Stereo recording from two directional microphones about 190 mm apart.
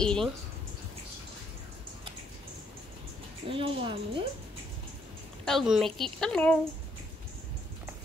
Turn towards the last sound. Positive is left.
turn(degrees=5)  # may be behind; listen again after turning